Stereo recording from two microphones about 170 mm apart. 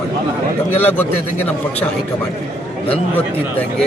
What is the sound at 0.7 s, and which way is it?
A man's voice, 10° left (ahead or behind).